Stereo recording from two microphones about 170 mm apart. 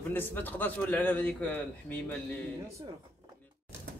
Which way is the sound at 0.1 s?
10° left (ahead or behind).